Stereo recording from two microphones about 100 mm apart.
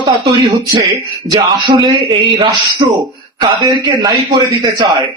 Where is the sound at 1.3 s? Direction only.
45° right (ahead or behind).